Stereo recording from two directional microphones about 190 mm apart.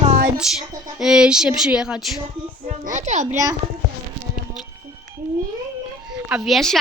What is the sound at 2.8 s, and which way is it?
Speech, 40° right (ahead or behind).